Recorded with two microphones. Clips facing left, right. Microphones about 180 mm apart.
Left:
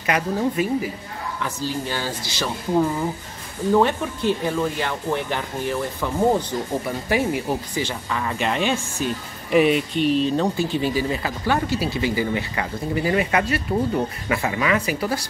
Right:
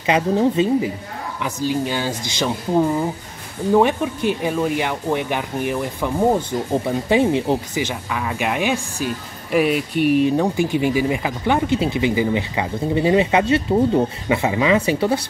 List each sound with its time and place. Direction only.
0.0 s speech: 25° right (ahead or behind)
3.7 s speech: 15° right (ahead or behind)
7.9 s speech: 5° right (ahead or behind)
9.5 s speech: 5° right (ahead or behind); by 15.1 s 25° right (ahead or behind)